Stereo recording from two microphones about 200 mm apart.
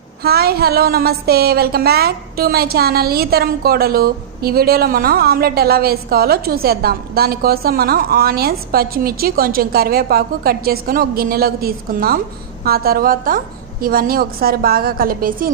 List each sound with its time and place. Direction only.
0.2 s a woman's voice: 50° right (ahead or behind)